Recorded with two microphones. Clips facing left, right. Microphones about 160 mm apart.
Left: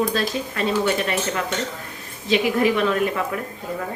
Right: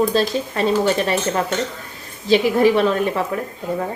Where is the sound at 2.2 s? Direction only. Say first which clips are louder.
Right 4 dB; 30° right (ahead or behind).